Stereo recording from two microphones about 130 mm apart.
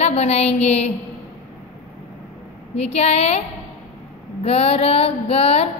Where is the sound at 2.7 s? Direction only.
55° left (ahead or behind).